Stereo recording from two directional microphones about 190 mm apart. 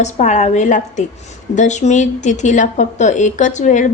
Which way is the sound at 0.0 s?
40° left (ahead or behind).